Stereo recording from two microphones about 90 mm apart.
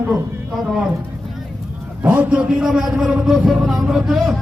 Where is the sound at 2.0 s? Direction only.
15° right (ahead or behind).